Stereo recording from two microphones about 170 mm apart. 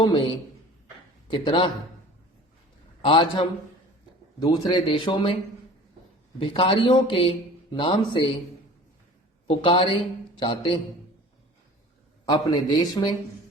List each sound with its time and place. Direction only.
0.0 s a man's voice: 30° left (ahead or behind)
3.0 s a man's voice: 30° left (ahead or behind)
6.4 s a man's voice: 30° left (ahead or behind)
9.5 s a man's voice: 30° left (ahead or behind)
12.3 s a man's voice: 25° left (ahead or behind)